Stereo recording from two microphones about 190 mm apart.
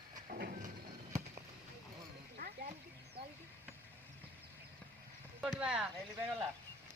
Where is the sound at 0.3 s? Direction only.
55° right (ahead or behind).